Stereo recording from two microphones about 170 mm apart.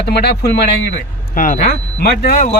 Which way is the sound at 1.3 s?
55° left (ahead or behind).